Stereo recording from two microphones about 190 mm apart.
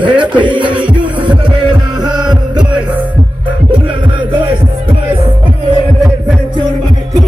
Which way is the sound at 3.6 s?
25° right (ahead or behind).